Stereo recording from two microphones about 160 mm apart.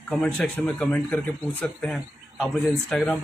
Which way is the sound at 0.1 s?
10° left (ahead or behind).